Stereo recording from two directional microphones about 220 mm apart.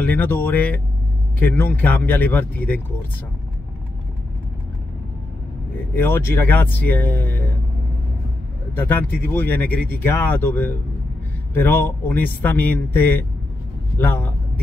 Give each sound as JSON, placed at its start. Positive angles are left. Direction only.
{"t": 0.0, "sound": "speech", "side_deg": 10}
{"t": 5.9, "sound": "speech", "side_deg": 10}
{"t": 8.7, "sound": "speech", "side_deg": 10}